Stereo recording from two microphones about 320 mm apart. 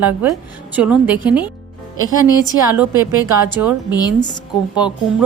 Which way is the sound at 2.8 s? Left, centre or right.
Right.